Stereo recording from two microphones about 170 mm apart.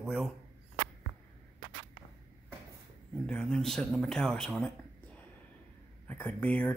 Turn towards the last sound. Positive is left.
turn(degrees=10)  # may be behind; listen again after turning